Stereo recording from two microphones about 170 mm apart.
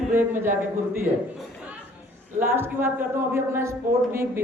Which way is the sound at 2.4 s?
15° right (ahead or behind).